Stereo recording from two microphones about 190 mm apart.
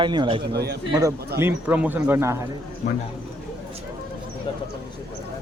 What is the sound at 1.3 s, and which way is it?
Speech, 10° right (ahead or behind).